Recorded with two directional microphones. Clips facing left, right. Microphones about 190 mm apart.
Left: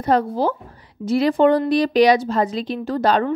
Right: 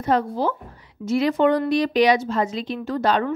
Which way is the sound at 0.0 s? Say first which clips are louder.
Left 3 dB; 35° left (ahead or behind).